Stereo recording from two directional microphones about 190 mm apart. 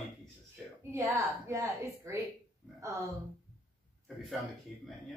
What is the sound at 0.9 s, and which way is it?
A woman's voice, 15° right (ahead or behind).